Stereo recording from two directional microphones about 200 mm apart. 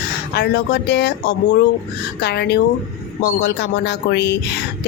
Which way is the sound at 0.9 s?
55° left (ahead or behind).